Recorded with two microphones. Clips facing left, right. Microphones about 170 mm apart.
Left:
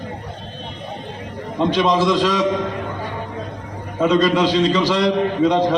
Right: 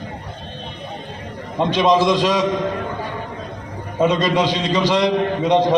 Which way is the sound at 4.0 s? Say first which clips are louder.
Left 1 dB; 20° right (ahead or behind).